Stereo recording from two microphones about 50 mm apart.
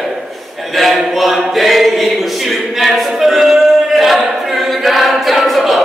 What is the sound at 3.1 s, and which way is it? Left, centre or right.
Choir, centre.